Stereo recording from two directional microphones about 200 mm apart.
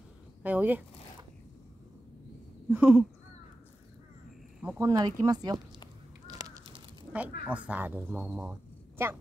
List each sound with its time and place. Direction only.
0.4 s speech: 10° right (ahead or behind)
2.7 s speech: 10° right (ahead or behind)
4.6 s speech: 10° right (ahead or behind)
6.2 s crow: 20° right (ahead or behind)
7.4 s speech: 5° right (ahead or behind)